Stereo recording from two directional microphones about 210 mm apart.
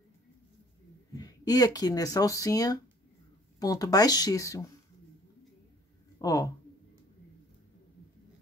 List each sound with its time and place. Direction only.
1.1 s speech: 20° left (ahead or behind)
6.2 s speech: 15° left (ahead or behind)